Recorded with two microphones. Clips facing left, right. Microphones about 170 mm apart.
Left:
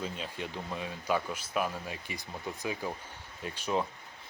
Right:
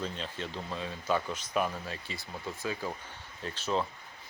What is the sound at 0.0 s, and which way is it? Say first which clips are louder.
Speech: even; 10° left (ahead or behind).